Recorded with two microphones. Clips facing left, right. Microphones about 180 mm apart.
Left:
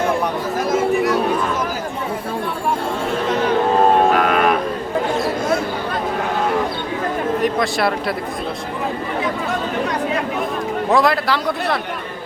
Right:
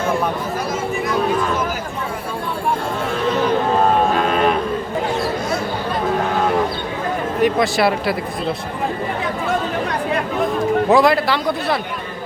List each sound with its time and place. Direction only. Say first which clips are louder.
4.3 s a sound: even; 30° right (ahead or behind)
7.4 s speech: right 6 dB; centre (ahead or behind)
10.9 s a man's voice: even; centre (ahead or behind)